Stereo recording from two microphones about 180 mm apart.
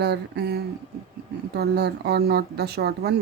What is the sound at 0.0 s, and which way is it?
Speech, 65° right (ahead or behind).